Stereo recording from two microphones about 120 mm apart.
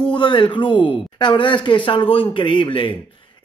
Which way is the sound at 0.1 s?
40° left (ahead or behind).